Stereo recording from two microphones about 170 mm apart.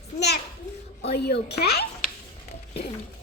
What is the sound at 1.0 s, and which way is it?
Speech, 75° left (ahead or behind).